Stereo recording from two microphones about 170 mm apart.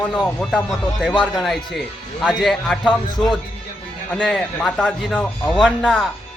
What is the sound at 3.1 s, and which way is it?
Speech, 25° left (ahead or behind).